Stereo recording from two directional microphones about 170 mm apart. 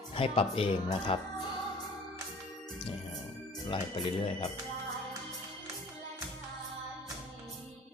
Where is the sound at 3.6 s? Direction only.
30° left (ahead or behind).